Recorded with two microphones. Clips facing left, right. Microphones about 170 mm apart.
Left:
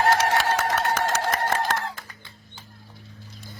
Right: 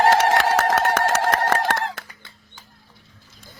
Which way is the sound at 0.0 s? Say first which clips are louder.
Right 4 dB; 90° right.